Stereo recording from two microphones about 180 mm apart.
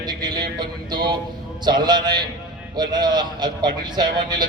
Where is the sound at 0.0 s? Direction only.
25° right (ahead or behind).